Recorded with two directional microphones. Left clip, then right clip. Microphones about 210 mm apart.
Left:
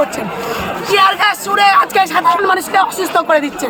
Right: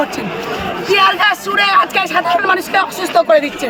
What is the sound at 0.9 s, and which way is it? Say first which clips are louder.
A woman's voice: even; centre (ahead or behind).